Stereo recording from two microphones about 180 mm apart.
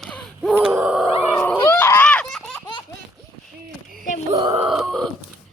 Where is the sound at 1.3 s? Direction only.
5° left (ahead or behind).